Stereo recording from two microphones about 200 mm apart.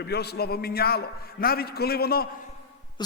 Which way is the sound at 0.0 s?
55° left (ahead or behind).